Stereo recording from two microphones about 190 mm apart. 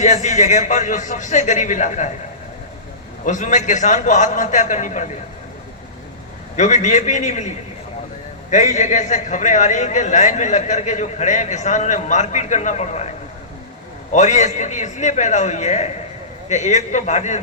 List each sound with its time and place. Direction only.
0.0 s a man's voice: 40° left (ahead or behind)
3.2 s a man's voice: 40° left (ahead or behind)
6.6 s a man's voice: 40° left (ahead or behind)
14.1 s a man's voice: 40° left (ahead or behind)